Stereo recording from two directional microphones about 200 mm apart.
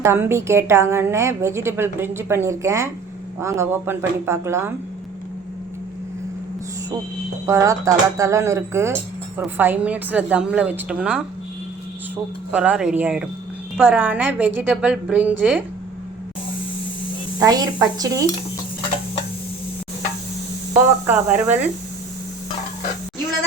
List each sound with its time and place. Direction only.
0.0 s a woman's voice: 10° right (ahead or behind)
7.4 s a woman's voice: 15° right (ahead or behind)
17.4 s speech: 20° right (ahead or behind)
21.1 s a woman's voice: 10° right (ahead or behind)